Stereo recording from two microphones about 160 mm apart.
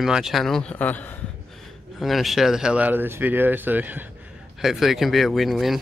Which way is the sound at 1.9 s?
Centre (ahead or behind).